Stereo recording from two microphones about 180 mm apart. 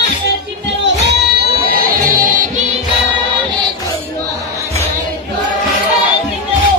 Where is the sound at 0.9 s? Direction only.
65° right (ahead or behind); by 2.4 s 50° right (ahead or behind).